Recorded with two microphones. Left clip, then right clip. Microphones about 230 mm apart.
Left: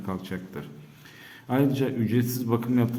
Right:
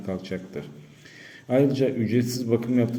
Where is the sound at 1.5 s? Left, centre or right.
Centre.